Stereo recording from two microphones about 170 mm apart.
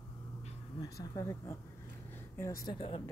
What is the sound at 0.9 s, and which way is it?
Speech, 20° left (ahead or behind).